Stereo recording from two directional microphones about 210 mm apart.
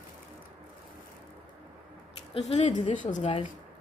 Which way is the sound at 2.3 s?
30° left (ahead or behind).